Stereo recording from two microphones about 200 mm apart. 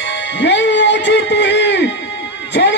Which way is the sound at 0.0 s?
65° left (ahead or behind).